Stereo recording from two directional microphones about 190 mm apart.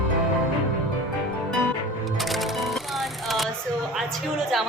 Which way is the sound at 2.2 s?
Centre (ahead or behind).